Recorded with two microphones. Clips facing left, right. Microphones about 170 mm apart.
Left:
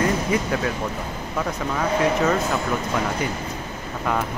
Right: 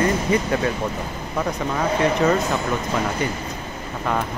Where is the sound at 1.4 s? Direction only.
10° right (ahead or behind).